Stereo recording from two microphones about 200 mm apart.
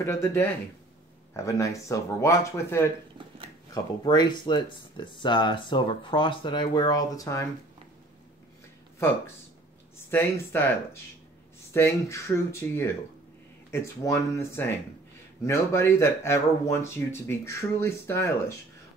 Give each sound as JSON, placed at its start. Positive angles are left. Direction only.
{"t": 0.0, "sound": "speech", "side_deg": 15}
{"t": 10.1, "sound": "speech", "side_deg": 10}